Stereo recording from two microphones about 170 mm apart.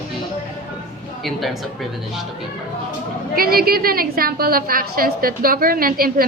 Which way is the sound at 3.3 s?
60° right (ahead or behind).